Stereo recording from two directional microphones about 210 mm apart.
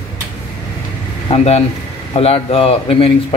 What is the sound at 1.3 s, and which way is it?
Speech, 30° left (ahead or behind).